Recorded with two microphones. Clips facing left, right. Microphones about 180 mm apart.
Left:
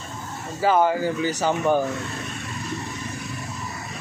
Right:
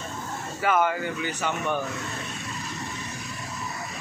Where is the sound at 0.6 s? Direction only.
30° left (ahead or behind).